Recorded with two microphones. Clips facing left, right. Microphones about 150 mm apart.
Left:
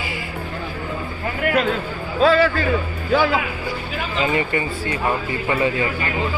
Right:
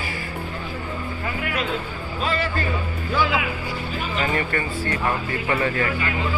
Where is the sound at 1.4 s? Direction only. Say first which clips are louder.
Left 9 dB; 55° left (ahead or behind).